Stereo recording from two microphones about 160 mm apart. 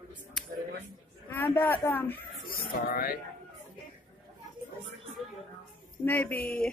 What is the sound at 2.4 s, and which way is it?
Speech, 70° left (ahead or behind).